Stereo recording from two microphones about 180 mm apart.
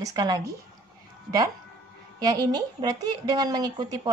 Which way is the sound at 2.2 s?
20° right (ahead or behind).